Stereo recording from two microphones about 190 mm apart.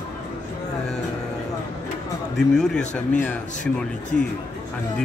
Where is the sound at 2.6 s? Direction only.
5° left (ahead or behind).